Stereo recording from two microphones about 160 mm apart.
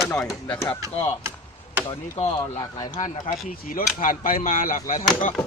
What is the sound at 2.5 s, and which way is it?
Speech, 25° left (ahead or behind).